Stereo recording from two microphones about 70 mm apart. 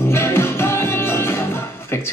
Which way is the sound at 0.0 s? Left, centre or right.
Left.